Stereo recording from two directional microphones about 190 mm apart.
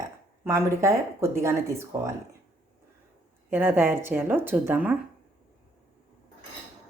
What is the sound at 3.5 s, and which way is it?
Speech, 10° right (ahead or behind).